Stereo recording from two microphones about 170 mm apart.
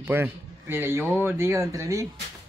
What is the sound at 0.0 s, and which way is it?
A man's voice, 10° right (ahead or behind).